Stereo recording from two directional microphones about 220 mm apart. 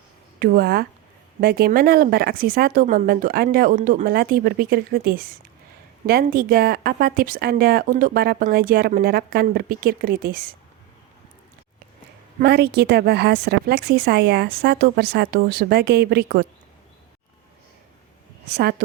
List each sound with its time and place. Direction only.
0.3 s a woman's voice: 45° right (ahead or behind)
12.4 s a woman's voice: 45° right (ahead or behind)
18.5 s a woman's voice: 45° right (ahead or behind)